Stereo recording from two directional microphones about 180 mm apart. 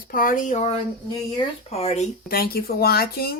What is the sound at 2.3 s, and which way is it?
Speech, 55° left (ahead or behind).